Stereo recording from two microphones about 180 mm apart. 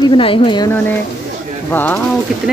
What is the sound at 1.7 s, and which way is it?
Speech, 10° left (ahead or behind).